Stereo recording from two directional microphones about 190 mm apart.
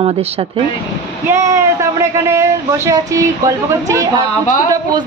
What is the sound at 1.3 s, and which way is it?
A man's voice, 15° right (ahead or behind).